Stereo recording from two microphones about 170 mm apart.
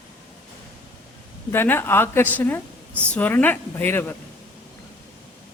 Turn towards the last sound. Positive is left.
turn(degrees=10)  # may be behind; listen again after turning